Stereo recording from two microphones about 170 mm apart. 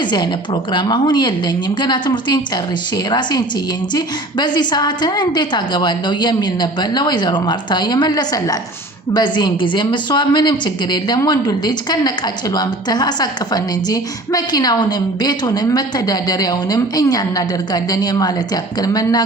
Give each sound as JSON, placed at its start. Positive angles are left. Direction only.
{"t": 0.0, "sound": "a woman's voice", "side_deg": 25}